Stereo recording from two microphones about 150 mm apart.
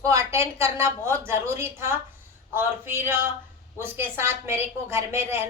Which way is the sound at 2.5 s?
15° right (ahead or behind).